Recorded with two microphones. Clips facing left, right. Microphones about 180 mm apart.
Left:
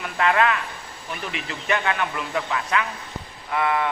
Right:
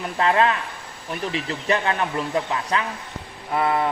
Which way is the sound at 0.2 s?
30° right (ahead or behind).